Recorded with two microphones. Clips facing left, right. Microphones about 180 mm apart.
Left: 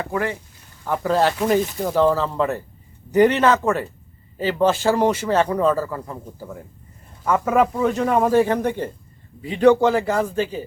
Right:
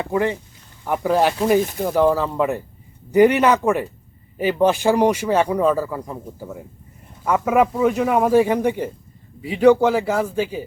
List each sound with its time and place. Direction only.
0.0 s speech: 20° right (ahead or behind)